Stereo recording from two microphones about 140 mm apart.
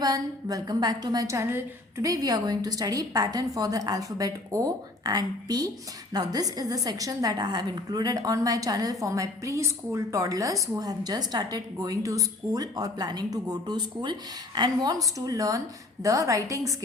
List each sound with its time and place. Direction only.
0.0 s a woman's voice: 25° right (ahead or behind)